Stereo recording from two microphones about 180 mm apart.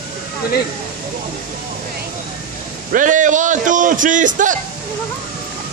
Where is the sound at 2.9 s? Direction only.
45° right (ahead or behind).